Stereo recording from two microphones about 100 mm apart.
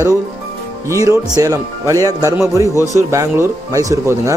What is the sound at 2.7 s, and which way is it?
Speech, 35° left (ahead or behind).